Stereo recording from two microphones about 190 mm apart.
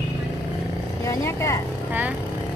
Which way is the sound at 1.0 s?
15° left (ahead or behind).